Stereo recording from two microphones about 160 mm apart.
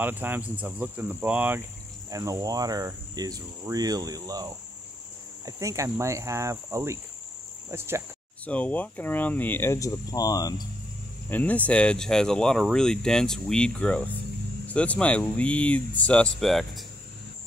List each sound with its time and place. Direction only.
0.0 s speech: 10° right (ahead or behind)
2.0 s speech: 20° right (ahead or behind)
8.5 s speech: 10° left (ahead or behind)
11.2 s speech: 10° left (ahead or behind)